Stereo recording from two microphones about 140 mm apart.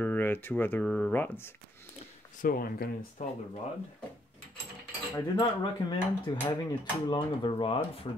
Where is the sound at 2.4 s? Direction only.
90° left.